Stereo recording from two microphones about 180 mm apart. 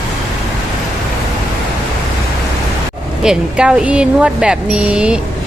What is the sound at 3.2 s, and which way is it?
Speech, 5° right (ahead or behind).